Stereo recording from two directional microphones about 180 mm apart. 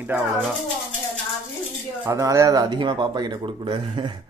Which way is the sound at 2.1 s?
15° right (ahead or behind).